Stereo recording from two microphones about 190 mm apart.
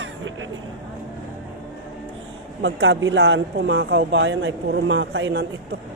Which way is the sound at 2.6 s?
80° right.